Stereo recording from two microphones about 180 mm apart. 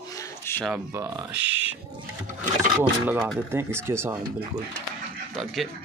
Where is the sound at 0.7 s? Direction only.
15° right (ahead or behind).